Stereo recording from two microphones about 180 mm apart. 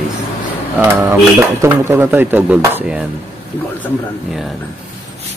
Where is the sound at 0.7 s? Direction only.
10° right (ahead or behind).